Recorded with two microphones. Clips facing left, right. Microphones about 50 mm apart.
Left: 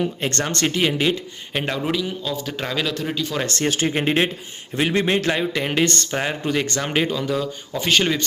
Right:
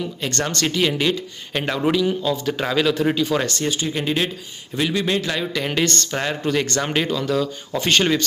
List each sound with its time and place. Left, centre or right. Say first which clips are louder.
0.0 s speech: left 1 dB; left; by 1.1 s centre
1.5 s speech: right 3 dB; centre
3.8 s speech: left 4 dB; left; by 8.2 s centre